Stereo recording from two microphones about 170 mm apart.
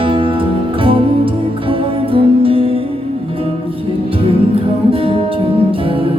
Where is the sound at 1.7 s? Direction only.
35° right (ahead or behind).